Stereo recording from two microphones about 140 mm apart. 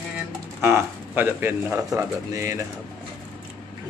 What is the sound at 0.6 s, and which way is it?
Speech, 15° right (ahead or behind).